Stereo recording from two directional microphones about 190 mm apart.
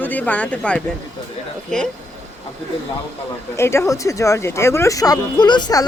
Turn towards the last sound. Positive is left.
turn(degrees=20)  # may be behind; listen again after turning